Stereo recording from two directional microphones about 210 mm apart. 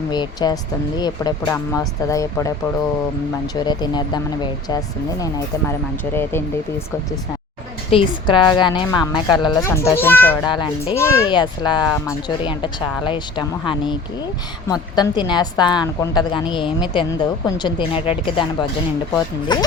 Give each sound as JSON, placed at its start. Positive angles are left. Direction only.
{"t": 0.1, "sound": "a woman's voice", "side_deg": 20}
{"t": 3.5, "sound": "a woman's voice", "side_deg": 20}
{"t": 7.9, "sound": "a woman's voice", "side_deg": 25}
{"t": 10.5, "sound": "a woman's voice", "side_deg": 20}